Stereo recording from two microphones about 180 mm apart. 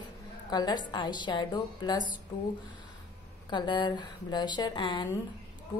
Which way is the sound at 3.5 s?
25° left (ahead or behind).